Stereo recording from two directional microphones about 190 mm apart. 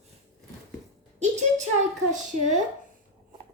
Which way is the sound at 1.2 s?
40° right (ahead or behind).